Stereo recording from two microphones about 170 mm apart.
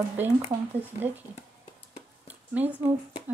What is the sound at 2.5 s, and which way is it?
Speech, 10° right (ahead or behind).